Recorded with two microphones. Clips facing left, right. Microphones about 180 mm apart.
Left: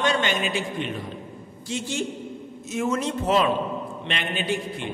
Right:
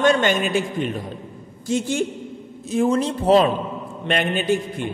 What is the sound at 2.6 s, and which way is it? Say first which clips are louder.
Speech: right 6 dB; 30° right (ahead or behind).